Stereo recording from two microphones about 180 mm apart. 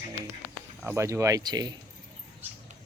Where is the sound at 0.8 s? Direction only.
15° right (ahead or behind).